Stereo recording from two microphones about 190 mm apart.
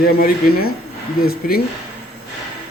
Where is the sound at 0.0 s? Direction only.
50° left (ahead or behind).